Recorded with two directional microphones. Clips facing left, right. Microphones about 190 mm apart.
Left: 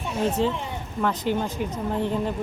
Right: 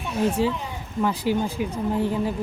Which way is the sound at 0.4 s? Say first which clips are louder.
Even; 5° right (ahead or behind).